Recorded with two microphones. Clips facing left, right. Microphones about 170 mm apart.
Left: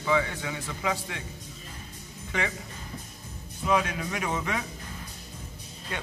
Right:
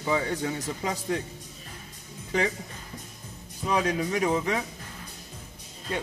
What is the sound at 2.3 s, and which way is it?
Speech, 35° right (ahead or behind).